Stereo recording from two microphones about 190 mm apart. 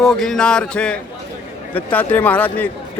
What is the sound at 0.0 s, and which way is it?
Speech, centre (ahead or behind).